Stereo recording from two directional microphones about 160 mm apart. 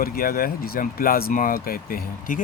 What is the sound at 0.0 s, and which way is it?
Speech, 70° left (ahead or behind).